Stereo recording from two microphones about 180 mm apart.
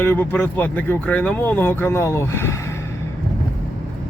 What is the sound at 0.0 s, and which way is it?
Speech, 10° left (ahead or behind).